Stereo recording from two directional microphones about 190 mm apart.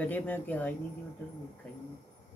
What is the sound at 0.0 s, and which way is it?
Speech, 10° left (ahead or behind).